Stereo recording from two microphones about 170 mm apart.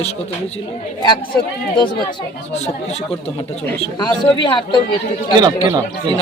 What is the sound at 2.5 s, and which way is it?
Speech, 40° left (ahead or behind).